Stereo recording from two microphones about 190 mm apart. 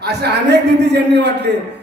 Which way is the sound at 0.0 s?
60° right (ahead or behind).